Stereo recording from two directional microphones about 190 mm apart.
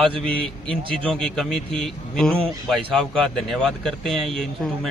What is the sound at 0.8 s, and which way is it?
Speech, 25° right (ahead or behind).